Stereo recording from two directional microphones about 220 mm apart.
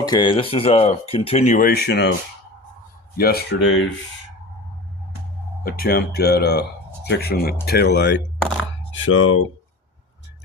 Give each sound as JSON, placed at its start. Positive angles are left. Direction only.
{"t": 0.0, "sound": "speech", "side_deg": 20}
{"t": 3.2, "sound": "speech", "side_deg": 45}
{"t": 5.6, "sound": "speech", "side_deg": 40}
{"t": 8.9, "sound": "speech", "side_deg": 60}